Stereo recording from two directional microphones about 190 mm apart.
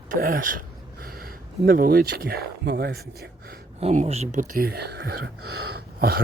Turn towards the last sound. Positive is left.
turn(degrees=-55)  # may be behind; listen again after turning